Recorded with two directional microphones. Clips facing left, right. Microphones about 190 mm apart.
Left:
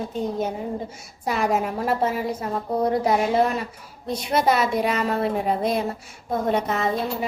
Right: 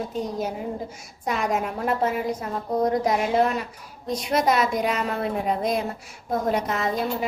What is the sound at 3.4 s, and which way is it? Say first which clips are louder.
A woman's voice: left 1 dB; centre (ahead or behind).